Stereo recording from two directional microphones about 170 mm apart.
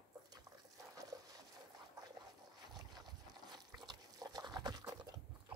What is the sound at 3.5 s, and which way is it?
Dog, 25° right (ahead or behind).